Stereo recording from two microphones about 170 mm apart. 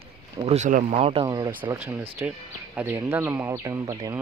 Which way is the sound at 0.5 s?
45° right (ahead or behind).